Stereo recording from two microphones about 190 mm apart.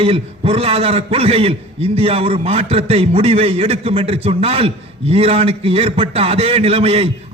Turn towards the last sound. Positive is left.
turn(degrees=-30)  # may be behind; listen again after turning